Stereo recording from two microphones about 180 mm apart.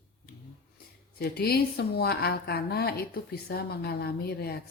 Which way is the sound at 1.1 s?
60° left (ahead or behind).